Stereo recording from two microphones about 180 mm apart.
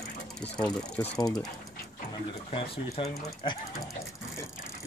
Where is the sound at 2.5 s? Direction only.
35° left (ahead or behind).